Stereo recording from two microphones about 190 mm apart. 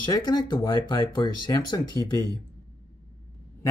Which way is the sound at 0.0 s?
20° left (ahead or behind).